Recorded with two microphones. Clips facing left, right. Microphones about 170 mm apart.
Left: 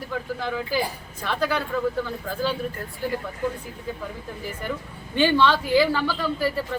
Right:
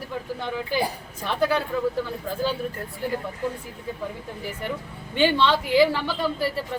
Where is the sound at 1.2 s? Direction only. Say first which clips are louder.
Right 2 dB; 25° right (ahead or behind).